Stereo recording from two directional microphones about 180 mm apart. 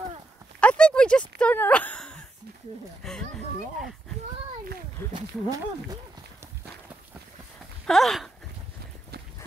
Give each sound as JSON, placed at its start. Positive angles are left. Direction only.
{"t": 0.6, "sound": "a sound", "side_deg": 5}
{"t": 3.0, "sound": "speech", "side_deg": 0}
{"t": 5.1, "sound": "speech", "side_deg": -20}
{"t": 7.8, "sound": "speech", "side_deg": 0}